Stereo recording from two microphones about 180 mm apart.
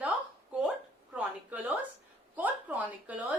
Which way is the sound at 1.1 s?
10° right (ahead or behind).